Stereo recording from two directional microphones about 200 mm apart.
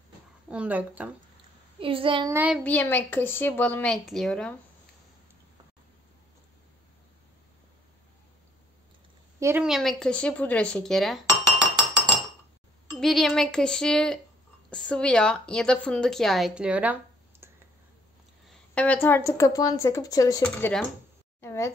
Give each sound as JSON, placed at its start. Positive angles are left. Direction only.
{"t": 0.5, "sound": "speech", "side_deg": -5}
{"t": 1.8, "sound": "a child's voice", "side_deg": -25}
{"t": 2.3, "sound": "speech", "side_deg": -5}
{"t": 2.6, "sound": "speech", "side_deg": 10}
{"t": 9.4, "sound": "a woman's voice", "side_deg": -10}
{"t": 13.0, "sound": "a woman's voice", "side_deg": 0}
{"t": 18.5, "sound": "speech", "side_deg": 5}
{"t": 20.4, "sound": "a woman's voice", "side_deg": 5}